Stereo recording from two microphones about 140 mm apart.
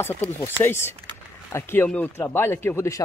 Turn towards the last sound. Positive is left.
turn(degrees=20)  # may be behind; listen again after turning